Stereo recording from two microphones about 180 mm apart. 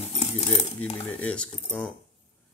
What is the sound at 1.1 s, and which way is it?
Speech, 5° left (ahead or behind).